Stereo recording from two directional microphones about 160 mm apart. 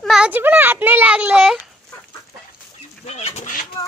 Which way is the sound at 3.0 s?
40° left (ahead or behind).